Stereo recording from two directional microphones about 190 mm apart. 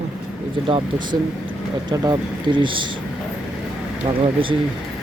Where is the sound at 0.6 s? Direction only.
30° right (ahead or behind).